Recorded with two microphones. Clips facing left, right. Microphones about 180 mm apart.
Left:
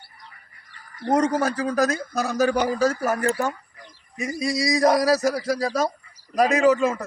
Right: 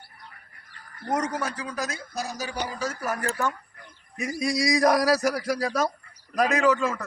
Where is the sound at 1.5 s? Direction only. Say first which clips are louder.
Left 10 dB; 45° left (ahead or behind).